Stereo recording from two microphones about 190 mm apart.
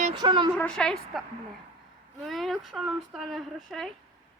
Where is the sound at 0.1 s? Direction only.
25° right (ahead or behind).